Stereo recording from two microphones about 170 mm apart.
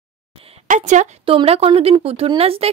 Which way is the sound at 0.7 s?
45° right (ahead or behind).